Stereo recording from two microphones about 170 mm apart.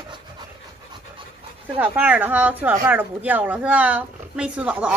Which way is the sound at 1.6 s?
10° right (ahead or behind).